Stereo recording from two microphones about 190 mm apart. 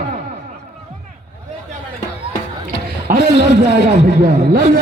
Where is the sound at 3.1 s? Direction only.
45° right (ahead or behind).